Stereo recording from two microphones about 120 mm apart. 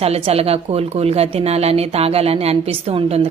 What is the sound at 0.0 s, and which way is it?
Speech, 60° right (ahead or behind).